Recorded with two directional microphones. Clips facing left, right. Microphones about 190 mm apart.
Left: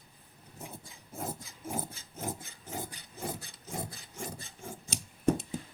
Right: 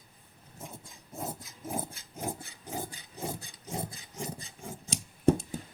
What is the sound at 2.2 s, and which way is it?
Wood, 15° right (ahead or behind).